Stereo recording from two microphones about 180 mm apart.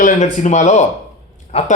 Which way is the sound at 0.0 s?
40° left (ahead or behind).